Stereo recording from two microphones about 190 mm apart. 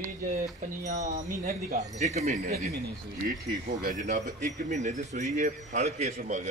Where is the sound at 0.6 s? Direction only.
40° right (ahead or behind).